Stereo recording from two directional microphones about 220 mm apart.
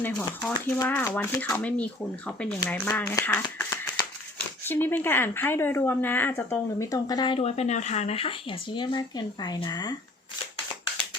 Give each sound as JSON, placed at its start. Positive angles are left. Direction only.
{"t": 0.0, "sound": "speech", "side_deg": 10}
{"t": 4.6, "sound": "speech", "side_deg": 10}